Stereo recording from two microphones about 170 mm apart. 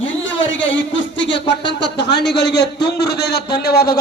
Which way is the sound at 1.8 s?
80° left.